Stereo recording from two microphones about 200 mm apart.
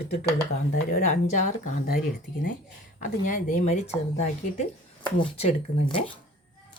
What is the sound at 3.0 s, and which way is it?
Speech, 40° left (ahead or behind).